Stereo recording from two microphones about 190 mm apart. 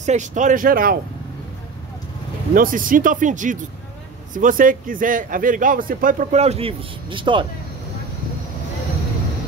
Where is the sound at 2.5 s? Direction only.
45° right (ahead or behind); by 7.4 s 25° right (ahead or behind).